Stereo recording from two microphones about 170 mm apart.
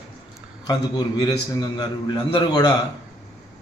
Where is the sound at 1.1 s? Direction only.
25° left (ahead or behind).